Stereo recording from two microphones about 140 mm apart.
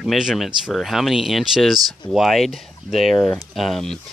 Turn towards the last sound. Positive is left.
turn(degrees=0)  # may be behind; listen again after turning